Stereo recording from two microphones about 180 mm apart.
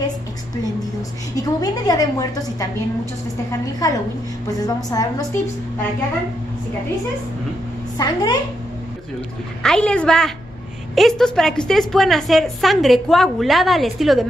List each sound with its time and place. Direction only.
1.3 s a woman's voice: 20° left (ahead or behind)
3.8 s a woman's voice: 20° left (ahead or behind)
8.0 s a woman's voice: 20° left (ahead or behind)
9.6 s a woman's voice: 5° left (ahead or behind)